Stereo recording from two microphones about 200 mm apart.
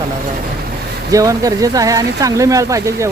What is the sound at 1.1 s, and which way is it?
Speech, 15° right (ahead or behind).